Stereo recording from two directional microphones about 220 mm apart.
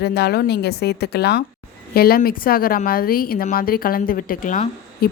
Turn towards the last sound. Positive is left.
turn(degrees=35)  # may be behind; listen again after turning